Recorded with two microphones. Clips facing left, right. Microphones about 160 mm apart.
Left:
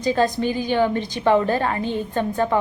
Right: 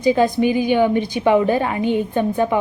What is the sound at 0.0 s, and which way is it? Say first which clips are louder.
A woman's voice: right 4 dB; 15° right (ahead or behind).